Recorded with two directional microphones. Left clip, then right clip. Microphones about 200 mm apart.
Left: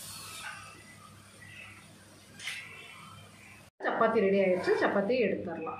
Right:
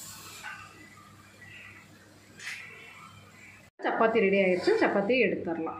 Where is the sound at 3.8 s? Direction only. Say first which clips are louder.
Right 2 dB; 25° right (ahead or behind).